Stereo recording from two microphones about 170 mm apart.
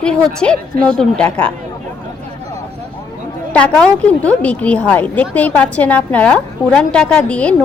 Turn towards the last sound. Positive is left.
turn(degrees=5)  # may be behind; listen again after turning